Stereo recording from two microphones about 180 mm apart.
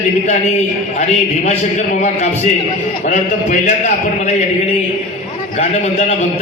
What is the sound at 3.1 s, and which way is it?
Speech, 45° left (ahead or behind).